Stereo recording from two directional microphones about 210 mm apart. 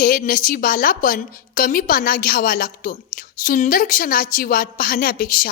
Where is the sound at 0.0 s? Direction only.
40° left (ahead or behind).